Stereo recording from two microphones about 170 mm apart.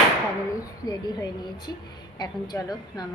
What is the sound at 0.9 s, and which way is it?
A woman's voice, 25° left (ahead or behind).